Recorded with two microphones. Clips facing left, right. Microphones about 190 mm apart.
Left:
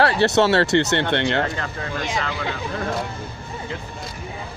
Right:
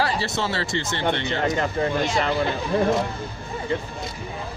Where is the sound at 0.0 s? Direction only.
70° left (ahead or behind).